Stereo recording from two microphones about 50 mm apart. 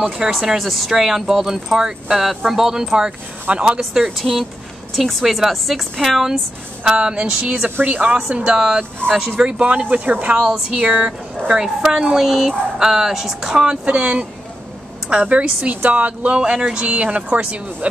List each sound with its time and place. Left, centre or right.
0.3 s speech: centre
3.4 s speech: centre
3.9 s a woman's voice: centre
6.8 s a woman's voice: centre; by 8.1 s right
8.3 s speech: right
8.5 s speech: centre
9.7 s a woman's voice: right
10.3 s speech: centre
16.8 s speech: right